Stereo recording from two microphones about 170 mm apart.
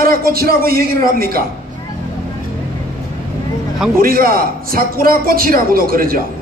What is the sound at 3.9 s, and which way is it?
A man's voice, 60° right (ahead or behind).